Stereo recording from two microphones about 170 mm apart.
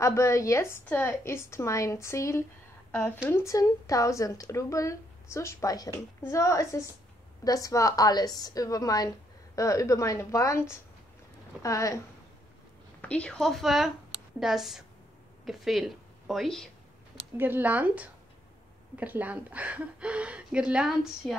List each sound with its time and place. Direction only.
0.0 s a woman's voice: 15° left (ahead or behind)
13.0 s a woman's voice: 5° left (ahead or behind)
17.4 s speech: 10° right (ahead or behind)